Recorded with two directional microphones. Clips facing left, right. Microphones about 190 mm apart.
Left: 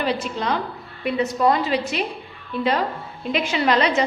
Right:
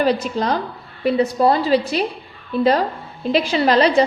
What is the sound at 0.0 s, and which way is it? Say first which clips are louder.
A woman's voice: right 5 dB; 40° right (ahead or behind).